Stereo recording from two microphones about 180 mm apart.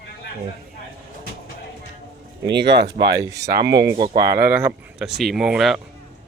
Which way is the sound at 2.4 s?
70° right (ahead or behind).